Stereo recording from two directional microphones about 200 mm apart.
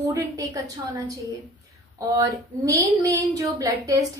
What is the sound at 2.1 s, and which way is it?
Speech, 15° right (ahead or behind).